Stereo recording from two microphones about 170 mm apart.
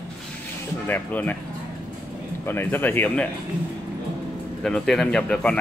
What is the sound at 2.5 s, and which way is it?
Speech, 10° left (ahead or behind).